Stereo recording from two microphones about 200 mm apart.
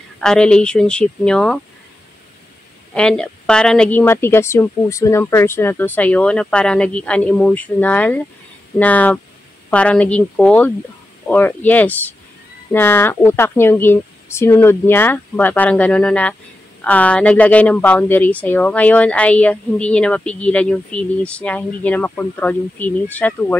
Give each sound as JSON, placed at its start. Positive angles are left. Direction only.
{"t": 0.2, "sound": "speech", "side_deg": 5}
{"t": 2.9, "sound": "speech", "side_deg": 5}